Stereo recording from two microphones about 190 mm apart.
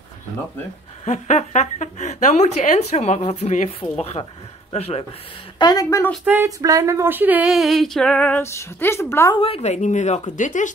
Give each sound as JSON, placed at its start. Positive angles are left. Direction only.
{"t": 1.0, "sound": "a woman's voice", "side_deg": 40}
{"t": 5.6, "sound": "a woman's voice", "side_deg": 20}
{"t": 6.2, "sound": "speech", "side_deg": -15}
{"t": 9.4, "sound": "a woman's voice", "side_deg": 35}